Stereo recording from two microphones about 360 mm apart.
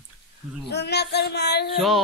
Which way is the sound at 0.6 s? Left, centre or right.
Left.